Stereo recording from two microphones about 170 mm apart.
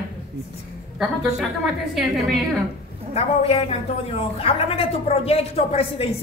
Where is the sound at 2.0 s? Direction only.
Centre (ahead or behind).